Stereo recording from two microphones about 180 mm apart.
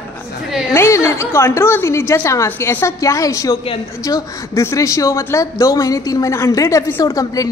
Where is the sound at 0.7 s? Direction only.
15° left (ahead or behind).